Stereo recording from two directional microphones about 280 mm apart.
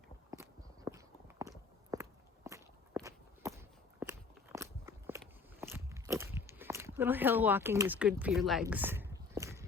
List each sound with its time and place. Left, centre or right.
0.3 s biting: centre
0.9 s walk: centre
5.5 s biting: centre
8.6 s a sound: centre